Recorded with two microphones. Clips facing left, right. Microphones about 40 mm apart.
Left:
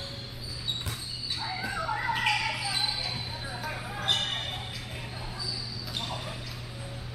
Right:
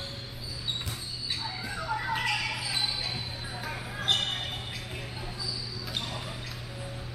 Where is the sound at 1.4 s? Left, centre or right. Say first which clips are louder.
Left 3 dB; centre.